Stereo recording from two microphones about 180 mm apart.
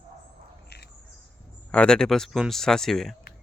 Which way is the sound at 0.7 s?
65° left (ahead or behind).